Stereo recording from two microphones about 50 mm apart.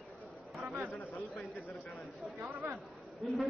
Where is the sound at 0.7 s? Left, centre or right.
Right.